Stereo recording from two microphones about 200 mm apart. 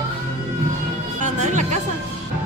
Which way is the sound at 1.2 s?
35° right (ahead or behind).